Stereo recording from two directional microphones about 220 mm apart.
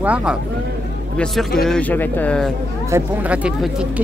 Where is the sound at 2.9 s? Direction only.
5° right (ahead or behind).